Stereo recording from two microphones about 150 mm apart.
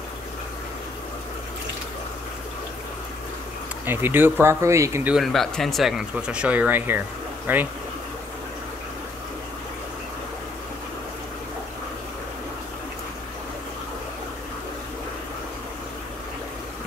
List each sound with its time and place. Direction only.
3.8 s speech: 15° right (ahead or behind)
5.1 s speech: centre (ahead or behind)